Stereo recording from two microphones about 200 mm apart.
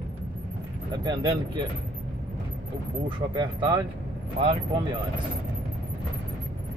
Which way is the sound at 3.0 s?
25° right (ahead or behind).